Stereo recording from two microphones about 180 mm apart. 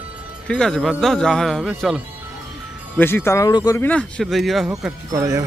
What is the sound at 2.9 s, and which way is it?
Speech, 10° left (ahead or behind).